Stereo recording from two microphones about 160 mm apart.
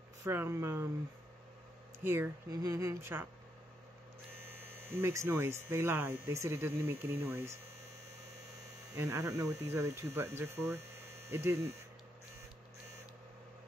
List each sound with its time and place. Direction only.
0.2 s hum: 15° right (ahead or behind)
2.0 s hum: 15° right (ahead or behind)
4.5 s hum: 15° right (ahead or behind)
8.9 s speech: 20° right (ahead or behind)
10.1 s hum: 15° right (ahead or behind)